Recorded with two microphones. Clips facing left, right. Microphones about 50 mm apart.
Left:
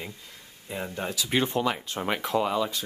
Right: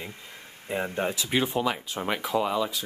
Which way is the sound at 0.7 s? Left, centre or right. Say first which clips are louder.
Right 4 dB; right.